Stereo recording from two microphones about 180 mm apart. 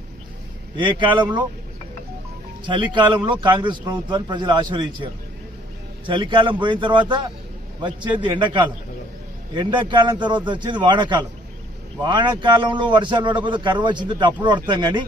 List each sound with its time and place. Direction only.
0.7 s a man's voice: 25° right (ahead or behind)
2.6 s a man's voice: 25° right (ahead or behind)